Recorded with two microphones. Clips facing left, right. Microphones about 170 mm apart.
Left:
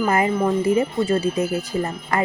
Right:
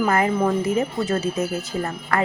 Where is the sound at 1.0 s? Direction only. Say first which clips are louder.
Left 3 dB; 10° left (ahead or behind).